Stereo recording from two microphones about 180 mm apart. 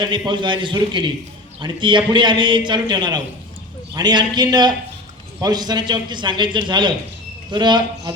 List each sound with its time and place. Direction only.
0.0 s a man's voice: 25° right (ahead or behind)